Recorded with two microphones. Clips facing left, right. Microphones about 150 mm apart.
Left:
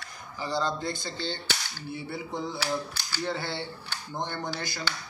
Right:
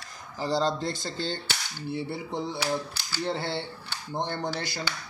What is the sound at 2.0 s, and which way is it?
Speech, 25° right (ahead or behind).